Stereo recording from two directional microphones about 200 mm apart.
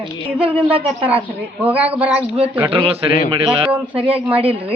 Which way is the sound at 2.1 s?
30° right (ahead or behind).